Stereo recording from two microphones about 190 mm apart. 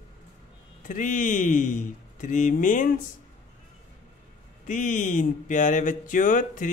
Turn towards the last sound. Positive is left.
turn(degrees=45)  # may be behind; listen again after turning